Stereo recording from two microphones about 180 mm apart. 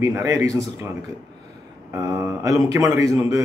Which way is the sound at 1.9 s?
15° right (ahead or behind).